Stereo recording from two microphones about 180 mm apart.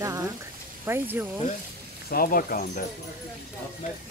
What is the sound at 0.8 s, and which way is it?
Speech, 10° right (ahead or behind).